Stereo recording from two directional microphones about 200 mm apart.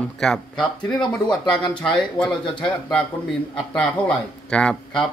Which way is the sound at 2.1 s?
5° left (ahead or behind).